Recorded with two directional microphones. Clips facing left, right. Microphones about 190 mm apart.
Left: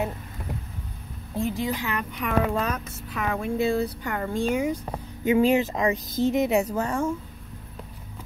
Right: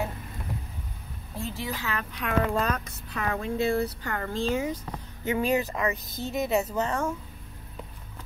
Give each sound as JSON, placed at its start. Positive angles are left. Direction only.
{"t": 1.3, "sound": "speech", "side_deg": 15}
{"t": 2.1, "sound": "speech", "side_deg": 5}